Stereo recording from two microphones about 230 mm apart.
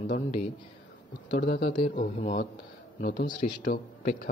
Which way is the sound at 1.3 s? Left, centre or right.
Left.